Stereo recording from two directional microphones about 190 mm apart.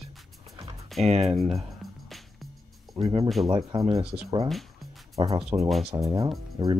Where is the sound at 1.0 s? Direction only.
35° right (ahead or behind).